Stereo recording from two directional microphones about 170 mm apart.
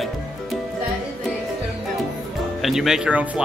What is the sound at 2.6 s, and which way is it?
Speech, centre (ahead or behind).